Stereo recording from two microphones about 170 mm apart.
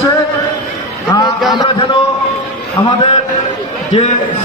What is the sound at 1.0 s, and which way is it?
Speech, 25° left (ahead or behind).